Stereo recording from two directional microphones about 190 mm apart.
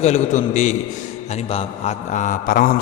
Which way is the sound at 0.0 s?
35° left (ahead or behind).